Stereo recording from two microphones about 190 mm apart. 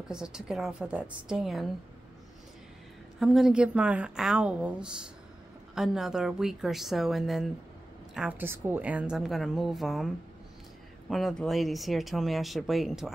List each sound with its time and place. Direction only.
0.1 s a woman's voice: 5° right (ahead or behind)
3.2 s a woman's voice: centre (ahead or behind)